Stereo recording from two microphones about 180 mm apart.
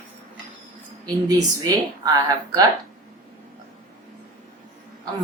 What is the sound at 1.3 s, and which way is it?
A woman's voice, 20° right (ahead or behind).